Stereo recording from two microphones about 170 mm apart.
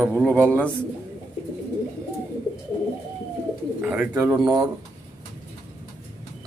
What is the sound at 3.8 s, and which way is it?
Speech, 10° right (ahead or behind).